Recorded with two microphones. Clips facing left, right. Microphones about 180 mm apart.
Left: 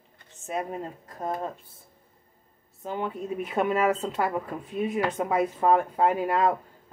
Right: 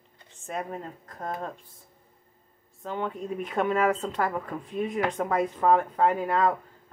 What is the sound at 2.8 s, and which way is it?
Speech, 5° left (ahead or behind).